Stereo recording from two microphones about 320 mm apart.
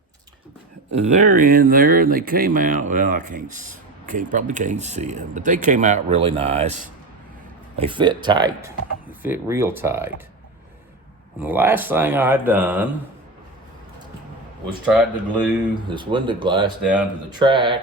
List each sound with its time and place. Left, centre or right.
0.9 s speech: right
11.3 s speech: centre
14.9 s speech: centre
15.9 s speech: centre